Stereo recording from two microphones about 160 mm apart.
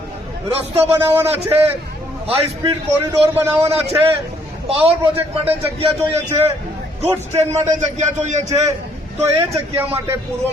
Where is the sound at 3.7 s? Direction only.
35° right (ahead or behind).